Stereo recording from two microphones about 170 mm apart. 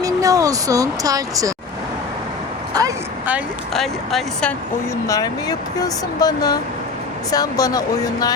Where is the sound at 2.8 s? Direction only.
20° right (ahead or behind).